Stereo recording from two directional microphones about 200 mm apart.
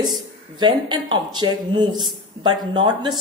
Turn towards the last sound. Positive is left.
turn(degrees=-20)  # may be behind; listen again after turning